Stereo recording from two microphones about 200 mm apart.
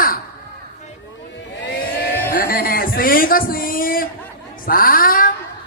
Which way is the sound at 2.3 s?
45° left (ahead or behind).